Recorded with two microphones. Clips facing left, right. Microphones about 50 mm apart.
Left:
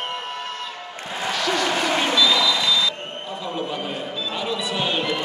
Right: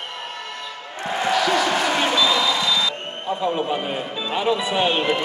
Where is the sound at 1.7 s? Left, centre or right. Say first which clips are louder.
Right 1 dB; right.